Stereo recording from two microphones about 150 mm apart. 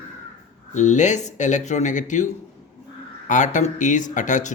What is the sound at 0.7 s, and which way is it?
Speech, 50° left (ahead or behind).